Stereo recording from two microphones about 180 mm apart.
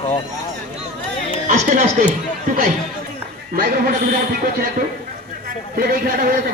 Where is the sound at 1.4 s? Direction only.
45° right (ahead or behind).